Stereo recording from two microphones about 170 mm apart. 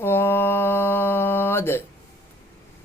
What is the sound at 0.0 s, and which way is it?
Mantra, 15° left (ahead or behind).